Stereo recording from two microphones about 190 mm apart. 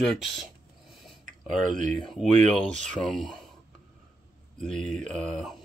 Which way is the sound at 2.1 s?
Centre (ahead or behind).